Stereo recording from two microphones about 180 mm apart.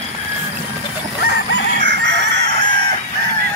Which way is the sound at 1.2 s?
65° left (ahead or behind).